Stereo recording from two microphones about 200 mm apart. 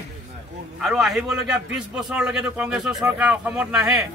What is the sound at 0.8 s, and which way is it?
A man's voice, centre (ahead or behind).